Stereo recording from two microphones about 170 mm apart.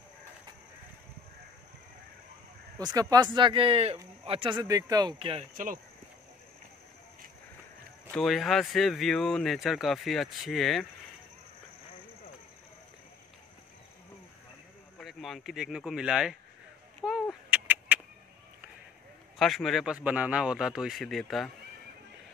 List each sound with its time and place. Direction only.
2.8 s speech: 20° right (ahead or behind)
8.1 s speech: centre (ahead or behind)
15.0 s speech: centre (ahead or behind)
17.0 s a sound: 5° right (ahead or behind)
19.3 s speech: centre (ahead or behind)